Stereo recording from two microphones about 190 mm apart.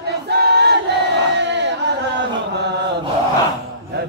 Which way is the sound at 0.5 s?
60° right (ahead or behind).